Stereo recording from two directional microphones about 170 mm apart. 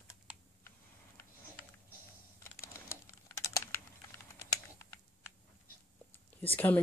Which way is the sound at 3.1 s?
15° left (ahead or behind).